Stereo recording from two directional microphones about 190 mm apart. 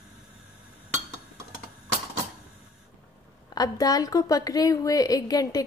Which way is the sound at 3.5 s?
20° left (ahead or behind).